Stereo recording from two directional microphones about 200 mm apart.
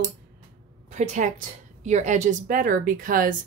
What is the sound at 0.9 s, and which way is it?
A woman's voice, 35° right (ahead or behind).